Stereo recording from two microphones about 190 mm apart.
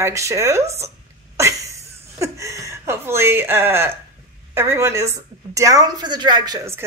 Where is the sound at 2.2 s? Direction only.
15° right (ahead or behind).